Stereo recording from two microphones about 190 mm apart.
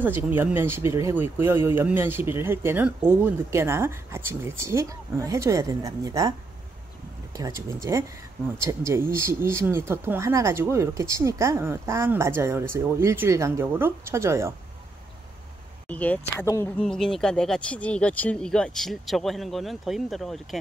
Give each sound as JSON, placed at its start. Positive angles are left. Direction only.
{"t": 0.0, "sound": "speech", "side_deg": -10}
{"t": 7.3, "sound": "speech", "side_deg": -15}
{"t": 15.9, "sound": "speech", "side_deg": 10}
{"t": 16.8, "sound": "speech", "side_deg": 5}